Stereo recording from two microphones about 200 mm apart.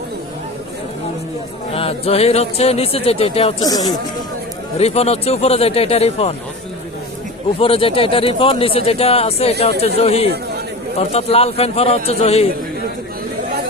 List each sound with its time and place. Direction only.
1.7 s speech: 30° left (ahead or behind)
3.6 s speech: 20° left (ahead or behind)
4.8 s speech: 30° left (ahead or behind)
7.6 s speech: 25° left (ahead or behind)